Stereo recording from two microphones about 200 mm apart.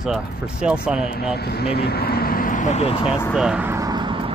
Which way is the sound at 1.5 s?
55° left (ahead or behind).